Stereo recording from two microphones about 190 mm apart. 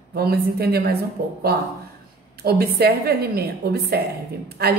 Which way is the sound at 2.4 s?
55° right (ahead or behind).